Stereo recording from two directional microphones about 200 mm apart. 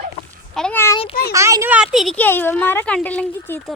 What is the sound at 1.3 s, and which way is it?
Speech, 15° right (ahead or behind).